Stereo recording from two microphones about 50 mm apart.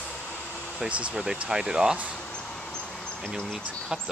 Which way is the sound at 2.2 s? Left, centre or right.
Centre.